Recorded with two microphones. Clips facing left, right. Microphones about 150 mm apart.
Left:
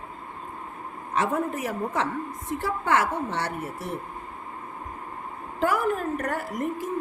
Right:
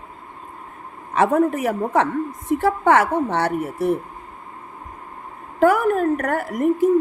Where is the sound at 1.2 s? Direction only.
60° right (ahead or behind).